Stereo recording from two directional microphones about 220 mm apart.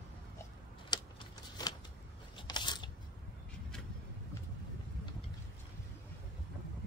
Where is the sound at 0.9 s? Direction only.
20° left (ahead or behind).